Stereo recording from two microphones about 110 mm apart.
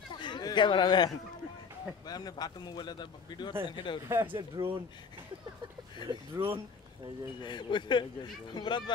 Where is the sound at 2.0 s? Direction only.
35° left (ahead or behind).